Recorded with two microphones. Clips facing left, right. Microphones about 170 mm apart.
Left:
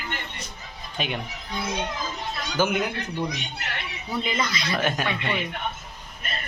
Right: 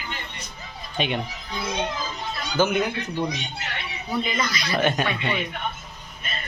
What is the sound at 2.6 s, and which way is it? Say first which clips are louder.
Speech: right 2 dB; 10° left (ahead or behind).